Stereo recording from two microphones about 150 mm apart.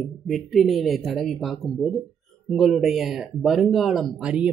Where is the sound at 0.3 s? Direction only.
Centre (ahead or behind).